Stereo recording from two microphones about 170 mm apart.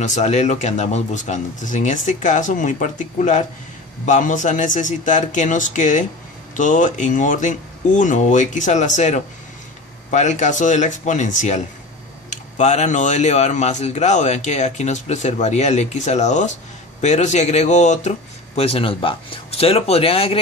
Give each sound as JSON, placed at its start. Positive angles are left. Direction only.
{"t": 0.0, "sound": "speech", "side_deg": 45}